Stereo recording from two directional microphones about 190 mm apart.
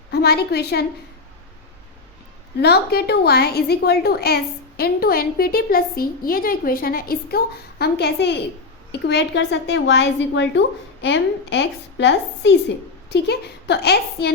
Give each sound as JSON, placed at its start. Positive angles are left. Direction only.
{"t": 0.1, "sound": "a woman's voice", "side_deg": 55}
{"t": 2.6, "sound": "a woman's voice", "side_deg": 60}